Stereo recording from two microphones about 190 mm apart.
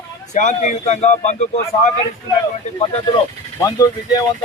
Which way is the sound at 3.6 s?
20° left (ahead or behind).